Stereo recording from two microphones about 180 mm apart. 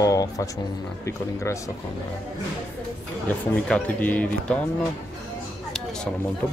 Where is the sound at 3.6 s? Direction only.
5° left (ahead or behind).